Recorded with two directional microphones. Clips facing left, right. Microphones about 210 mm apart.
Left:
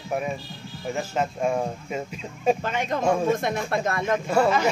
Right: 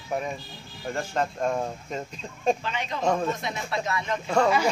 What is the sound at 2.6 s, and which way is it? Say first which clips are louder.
Speech: left 3 dB; 50° left (ahead or behind).